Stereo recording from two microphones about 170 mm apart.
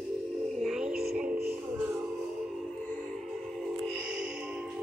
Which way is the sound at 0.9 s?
60° right (ahead or behind).